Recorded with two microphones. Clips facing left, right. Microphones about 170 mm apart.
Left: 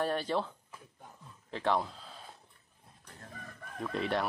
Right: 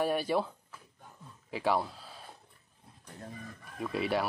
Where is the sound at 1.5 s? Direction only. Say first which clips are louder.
Right 1 dB; 10° right (ahead or behind).